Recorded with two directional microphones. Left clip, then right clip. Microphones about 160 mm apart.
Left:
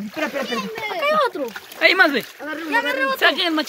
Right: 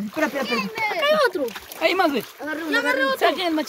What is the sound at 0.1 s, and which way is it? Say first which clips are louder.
Speech: right 1 dB; 25° right (ahead or behind).